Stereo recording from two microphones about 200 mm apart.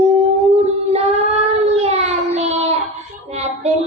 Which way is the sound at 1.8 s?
30° right (ahead or behind).